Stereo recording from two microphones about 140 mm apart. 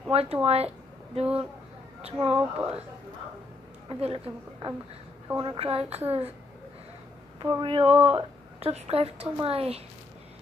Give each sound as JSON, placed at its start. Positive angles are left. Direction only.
{"t": 0.1, "sound": "speech", "side_deg": -45}
{"t": 1.2, "sound": "speech", "side_deg": -10}
{"t": 2.0, "sound": "speech", "side_deg": -45}
{"t": 2.3, "sound": "speech", "side_deg": -10}
{"t": 4.0, "sound": "a woman's voice", "side_deg": -45}
{"t": 7.3, "sound": "speech", "side_deg": -25}
{"t": 7.6, "sound": "a woman's voice", "side_deg": -40}